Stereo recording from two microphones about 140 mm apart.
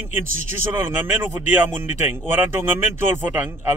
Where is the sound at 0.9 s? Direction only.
15° right (ahead or behind).